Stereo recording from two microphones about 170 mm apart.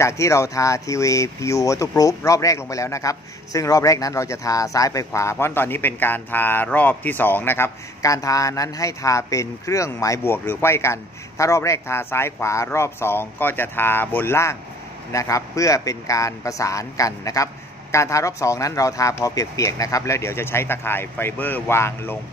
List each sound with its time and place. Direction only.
0.0 s speech: 15° left (ahead or behind)